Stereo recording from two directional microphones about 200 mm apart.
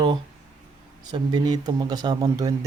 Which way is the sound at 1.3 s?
20° right (ahead or behind).